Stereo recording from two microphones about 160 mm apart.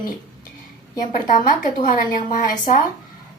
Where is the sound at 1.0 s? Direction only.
60° left (ahead or behind).